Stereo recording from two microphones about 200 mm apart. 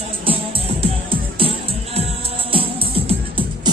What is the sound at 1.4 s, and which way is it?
Music, 25° right (ahead or behind).